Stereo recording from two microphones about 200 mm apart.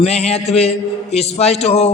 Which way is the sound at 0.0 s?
30° left (ahead or behind).